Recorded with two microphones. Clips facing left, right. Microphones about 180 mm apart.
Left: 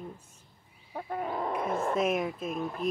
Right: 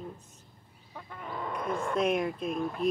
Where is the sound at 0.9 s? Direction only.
45° left (ahead or behind).